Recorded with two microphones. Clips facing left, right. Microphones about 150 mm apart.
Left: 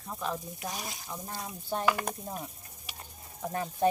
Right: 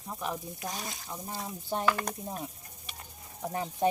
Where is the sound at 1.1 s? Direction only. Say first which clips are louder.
Right 2 dB; 15° right (ahead or behind).